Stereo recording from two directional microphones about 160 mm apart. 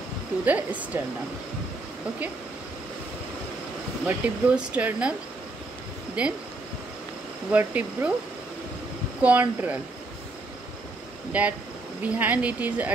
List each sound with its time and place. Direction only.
0.5 s speech: 10° right (ahead or behind)
4.0 s speech: 5° right (ahead or behind)
6.2 s speech: 10° right (ahead or behind)
7.5 s speech: 10° right (ahead or behind)
9.2 s speech: 10° right (ahead or behind)
11.3 s speech: 10° right (ahead or behind)